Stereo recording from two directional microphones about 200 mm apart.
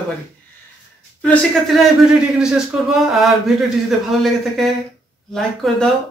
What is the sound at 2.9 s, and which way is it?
Speech, centre (ahead or behind).